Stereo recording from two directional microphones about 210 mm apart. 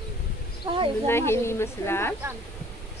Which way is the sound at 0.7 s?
20° right (ahead or behind).